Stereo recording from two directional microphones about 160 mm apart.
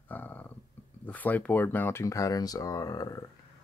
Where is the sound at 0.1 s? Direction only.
10° left (ahead or behind).